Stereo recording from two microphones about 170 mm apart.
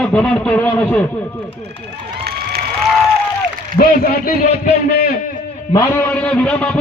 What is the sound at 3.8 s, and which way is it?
Speech, 45° left (ahead or behind).